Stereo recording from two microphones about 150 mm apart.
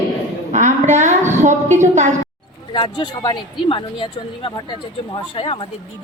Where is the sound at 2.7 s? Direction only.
30° left (ahead or behind).